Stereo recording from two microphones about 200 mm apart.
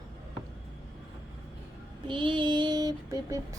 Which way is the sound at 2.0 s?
25° right (ahead or behind).